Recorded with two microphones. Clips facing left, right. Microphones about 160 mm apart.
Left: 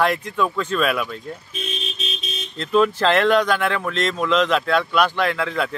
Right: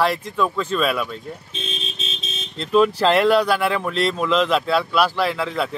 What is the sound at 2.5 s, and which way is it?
Speech, centre (ahead or behind).